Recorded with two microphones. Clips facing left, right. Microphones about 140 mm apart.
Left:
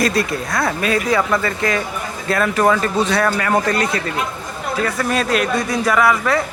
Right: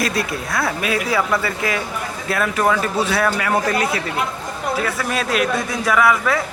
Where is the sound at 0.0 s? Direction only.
Centre (ahead or behind).